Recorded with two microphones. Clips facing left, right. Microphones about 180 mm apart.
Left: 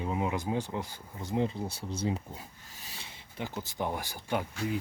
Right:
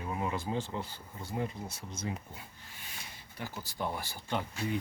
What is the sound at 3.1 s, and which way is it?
Speech, 20° left (ahead or behind).